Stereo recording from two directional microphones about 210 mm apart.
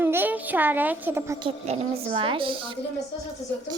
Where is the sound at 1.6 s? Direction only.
25° right (ahead or behind).